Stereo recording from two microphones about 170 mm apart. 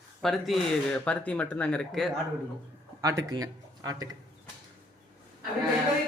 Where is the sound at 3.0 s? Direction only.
20° right (ahead or behind).